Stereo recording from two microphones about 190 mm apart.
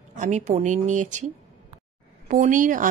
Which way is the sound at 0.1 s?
40° right (ahead or behind).